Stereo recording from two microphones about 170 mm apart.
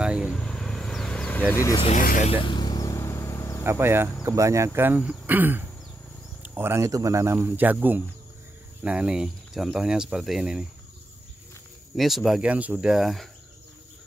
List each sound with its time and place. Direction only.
0.0 s vehicle: 5° right (ahead or behind)
1.5 s speech: 15° left (ahead or behind)
2.0 s speech: 55° left (ahead or behind)
2.4 s insect: 25° left (ahead or behind)
3.6 s speech: 15° right (ahead or behind)
11.9 s speech: centre (ahead or behind)